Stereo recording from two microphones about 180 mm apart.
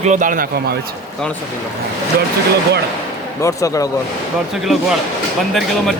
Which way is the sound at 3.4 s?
20° left (ahead or behind).